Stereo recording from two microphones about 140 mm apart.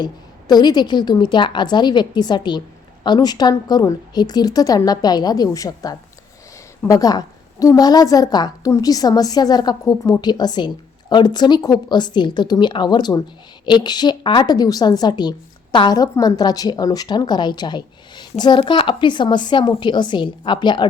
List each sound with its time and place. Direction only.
0.0 s a woman's voice: 30° left (ahead or behind)